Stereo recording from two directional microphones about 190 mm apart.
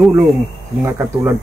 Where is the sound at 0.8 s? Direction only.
15° right (ahead or behind).